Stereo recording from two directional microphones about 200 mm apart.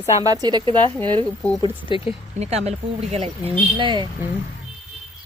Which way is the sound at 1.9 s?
25° left (ahead or behind).